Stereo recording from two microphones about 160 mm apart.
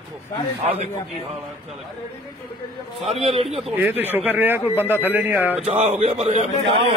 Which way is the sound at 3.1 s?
40° right (ahead or behind).